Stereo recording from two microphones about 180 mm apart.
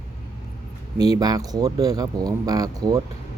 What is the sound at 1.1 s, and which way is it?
Speech, 20° right (ahead or behind).